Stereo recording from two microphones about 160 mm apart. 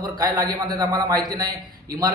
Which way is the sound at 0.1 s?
25° right (ahead or behind).